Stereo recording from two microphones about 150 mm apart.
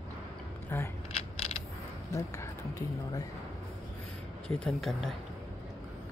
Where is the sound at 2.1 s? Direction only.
20° left (ahead or behind).